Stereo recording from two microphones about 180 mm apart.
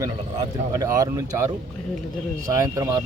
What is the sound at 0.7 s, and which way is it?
Speech, 20° right (ahead or behind).